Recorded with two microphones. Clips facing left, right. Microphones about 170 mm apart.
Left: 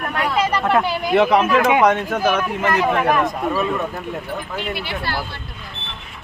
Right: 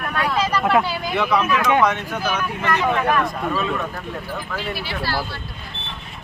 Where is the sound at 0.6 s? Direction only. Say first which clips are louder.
Right 1 dB; 10° right (ahead or behind).